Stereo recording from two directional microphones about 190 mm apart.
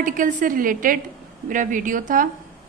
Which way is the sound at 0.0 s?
45° right (ahead or behind).